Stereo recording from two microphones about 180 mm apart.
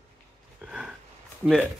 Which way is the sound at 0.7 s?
5° right (ahead or behind).